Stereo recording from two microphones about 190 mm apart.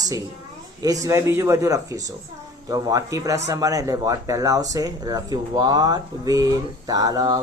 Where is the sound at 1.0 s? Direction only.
15° right (ahead or behind).